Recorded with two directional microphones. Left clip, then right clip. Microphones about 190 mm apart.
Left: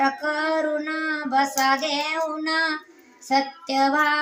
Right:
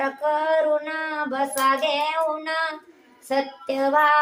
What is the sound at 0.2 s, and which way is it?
Child singing, 15° right (ahead or behind).